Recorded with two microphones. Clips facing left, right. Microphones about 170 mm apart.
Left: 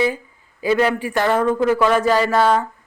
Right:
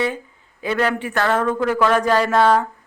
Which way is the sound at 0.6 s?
5° left (ahead or behind).